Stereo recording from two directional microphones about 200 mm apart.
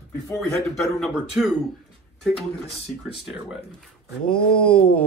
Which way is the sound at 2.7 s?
30° left (ahead or behind).